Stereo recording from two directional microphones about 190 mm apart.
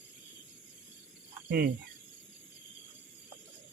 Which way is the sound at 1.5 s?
60° right (ahead or behind).